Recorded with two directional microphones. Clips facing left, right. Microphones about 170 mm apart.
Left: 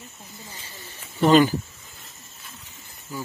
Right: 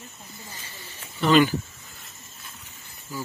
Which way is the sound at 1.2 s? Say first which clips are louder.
Left 2 dB; 35° left (ahead or behind).